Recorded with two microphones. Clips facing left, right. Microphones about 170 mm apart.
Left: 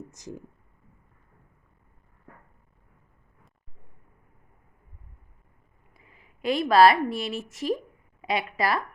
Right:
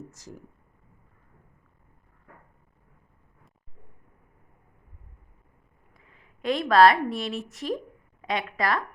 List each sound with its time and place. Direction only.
0.1 s speech: 20° left (ahead or behind)
5.9 s a woman's voice: 5° left (ahead or behind)